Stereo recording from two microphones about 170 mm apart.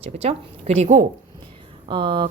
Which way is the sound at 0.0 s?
35° right (ahead or behind).